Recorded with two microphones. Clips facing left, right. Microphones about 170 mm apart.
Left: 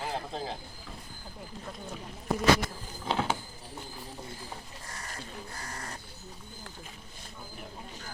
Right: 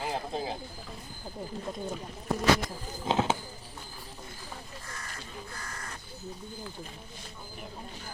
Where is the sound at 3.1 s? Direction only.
20° right (ahead or behind).